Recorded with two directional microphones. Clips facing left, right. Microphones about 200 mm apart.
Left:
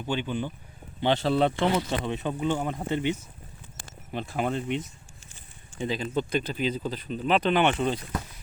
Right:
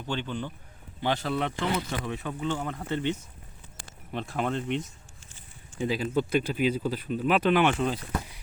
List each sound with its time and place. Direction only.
0.0 s a man's voice: 10° left (ahead or behind)
1.0 s speech: 25° left (ahead or behind)
4.1 s speech: 5° left (ahead or behind)
5.8 s speech: 10° right (ahead or behind)